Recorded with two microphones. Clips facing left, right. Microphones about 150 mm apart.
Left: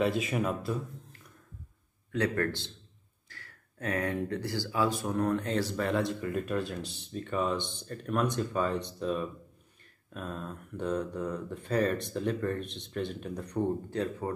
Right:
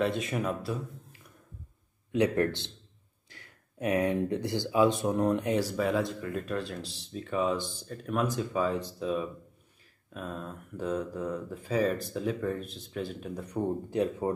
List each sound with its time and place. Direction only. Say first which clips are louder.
0.0 s speech: left 1 dB; centre (ahead or behind)
2.1 s a man's voice: right 4 dB; 15° right (ahead or behind)
13.8 s a man's voice: right 4 dB; 15° right (ahead or behind)